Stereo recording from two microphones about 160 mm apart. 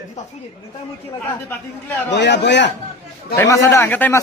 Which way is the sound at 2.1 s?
90° left.